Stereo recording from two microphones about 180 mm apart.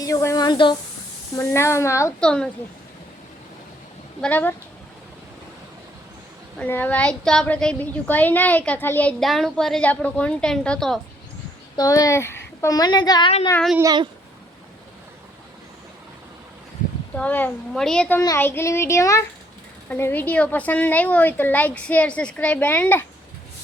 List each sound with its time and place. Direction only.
0.0 s speech: 15° left (ahead or behind)
1.4 s a woman's voice: 15° left (ahead or behind)
2.2 s a woman's voice: 5° left (ahead or behind)
4.2 s a woman's voice: 10° left (ahead or behind)
6.6 s a woman's voice: 10° left (ahead or behind)
11.8 s a woman's voice: 20° left (ahead or behind)
13.8 s speech: 25° right (ahead or behind)
17.2 s a woman's voice: 10° left (ahead or behind)
18.2 s a woman's voice: 15° left (ahead or behind)